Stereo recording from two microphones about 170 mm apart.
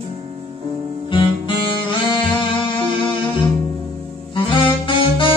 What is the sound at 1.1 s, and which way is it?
Music, 30° left (ahead or behind).